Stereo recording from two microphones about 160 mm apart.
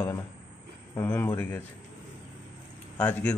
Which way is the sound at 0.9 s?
15° left (ahead or behind).